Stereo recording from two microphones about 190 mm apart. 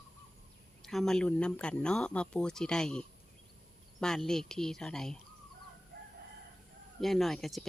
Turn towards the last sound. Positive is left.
turn(degrees=0)  # may be behind; listen again after turning